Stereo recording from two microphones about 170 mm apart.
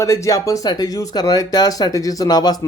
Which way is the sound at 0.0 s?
20° left (ahead or behind).